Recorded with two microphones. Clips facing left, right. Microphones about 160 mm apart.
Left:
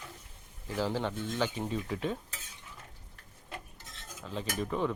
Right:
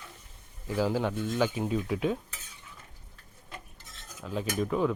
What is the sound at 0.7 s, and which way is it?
Speech, 10° right (ahead or behind).